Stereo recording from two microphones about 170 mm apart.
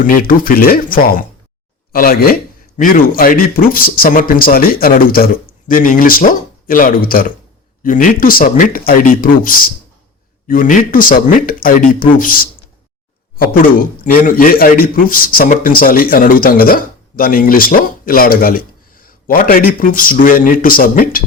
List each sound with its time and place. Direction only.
0.0 s a man's voice: 55° left (ahead or behind)